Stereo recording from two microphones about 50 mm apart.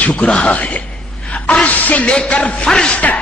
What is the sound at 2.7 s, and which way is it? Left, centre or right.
Speech, centre.